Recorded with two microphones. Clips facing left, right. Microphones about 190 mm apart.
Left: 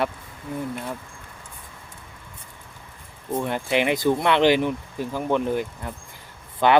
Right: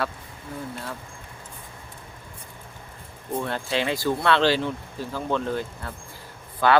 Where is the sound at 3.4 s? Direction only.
15° left (ahead or behind).